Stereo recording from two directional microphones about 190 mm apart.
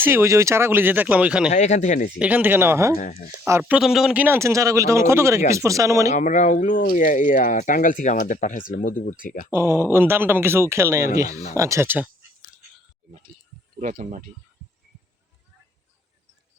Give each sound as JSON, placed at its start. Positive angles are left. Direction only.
{"t": 0.0, "sound": "speech", "side_deg": -15}
{"t": 1.5, "sound": "speech", "side_deg": 35}
{"t": 2.1, "sound": "speech", "side_deg": -5}
{"t": 3.0, "sound": "speech", "side_deg": 40}
{"t": 3.4, "sound": "speech", "side_deg": -10}
{"t": 6.1, "sound": "speech", "side_deg": 40}
{"t": 9.5, "sound": "speech", "side_deg": -10}
{"t": 13.7, "sound": "speech", "side_deg": -40}